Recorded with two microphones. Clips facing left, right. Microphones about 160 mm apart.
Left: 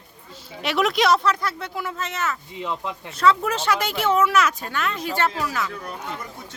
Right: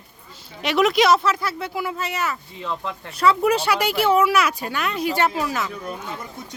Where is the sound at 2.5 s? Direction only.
15° left (ahead or behind).